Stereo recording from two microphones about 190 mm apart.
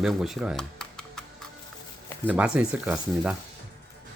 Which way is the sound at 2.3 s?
5° right (ahead or behind).